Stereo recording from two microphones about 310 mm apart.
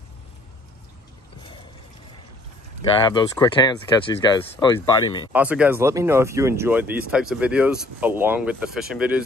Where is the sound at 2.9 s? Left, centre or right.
Centre.